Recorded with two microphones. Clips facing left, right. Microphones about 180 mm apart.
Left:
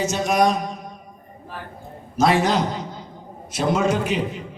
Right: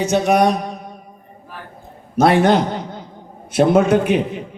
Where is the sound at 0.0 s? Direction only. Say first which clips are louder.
Right 4 dB; 65° right (ahead or behind).